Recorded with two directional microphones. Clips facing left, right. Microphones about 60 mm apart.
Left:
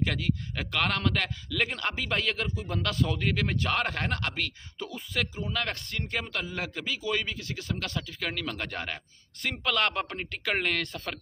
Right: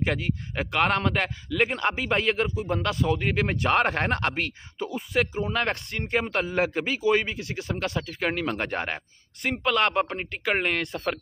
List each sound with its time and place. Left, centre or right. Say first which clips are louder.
0.0 s speech: right 2 dB; right
4.7 s speech: right 7 dB; centre
9.4 s speech: right 4 dB; centre